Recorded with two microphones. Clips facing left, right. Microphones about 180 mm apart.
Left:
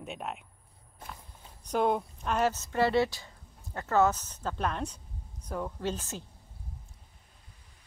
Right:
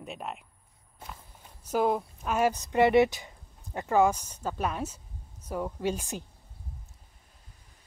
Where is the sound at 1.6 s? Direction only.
5° right (ahead or behind).